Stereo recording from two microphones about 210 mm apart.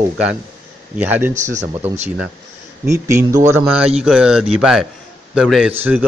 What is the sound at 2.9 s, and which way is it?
A man's voice, 15° right (ahead or behind).